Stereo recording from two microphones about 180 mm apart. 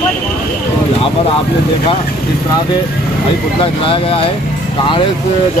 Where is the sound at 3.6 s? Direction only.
30° left (ahead or behind).